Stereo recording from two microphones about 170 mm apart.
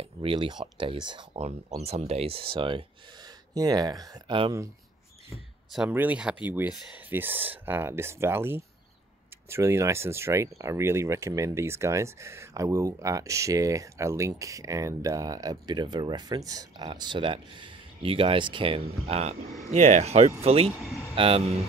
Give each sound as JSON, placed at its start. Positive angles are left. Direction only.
{"t": 0.0, "sound": "speech", "side_deg": -30}
{"t": 5.7, "sound": "speech", "side_deg": -5}